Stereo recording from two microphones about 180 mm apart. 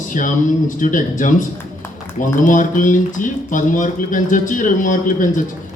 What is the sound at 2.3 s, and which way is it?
Speech, 45° left (ahead or behind).